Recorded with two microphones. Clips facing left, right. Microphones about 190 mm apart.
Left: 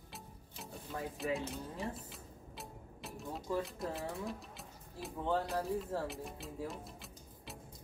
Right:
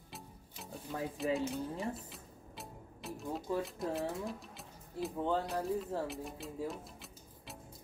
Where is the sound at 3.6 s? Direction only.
Centre (ahead or behind).